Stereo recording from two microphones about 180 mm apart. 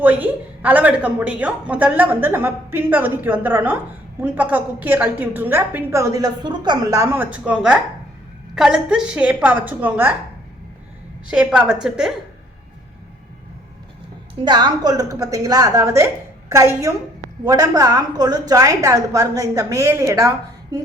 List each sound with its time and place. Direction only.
0.0 s a woman's voice: 10° right (ahead or behind)
11.3 s a woman's voice: 5° right (ahead or behind)
14.4 s a woman's voice: 25° right (ahead or behind)